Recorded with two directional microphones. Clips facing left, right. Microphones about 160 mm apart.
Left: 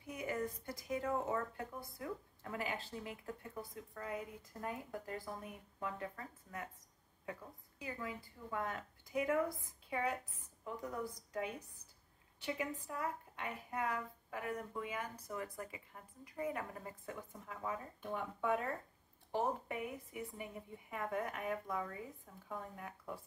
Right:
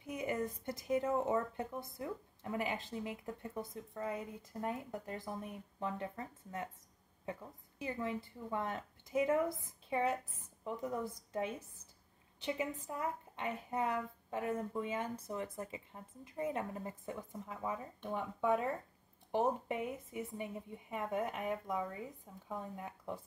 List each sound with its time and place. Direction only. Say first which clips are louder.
0.0 s a woman's voice: right 3 dB; 20° right (ahead or behind)
7.8 s a woman's voice: right 6 dB; 25° right (ahead or behind)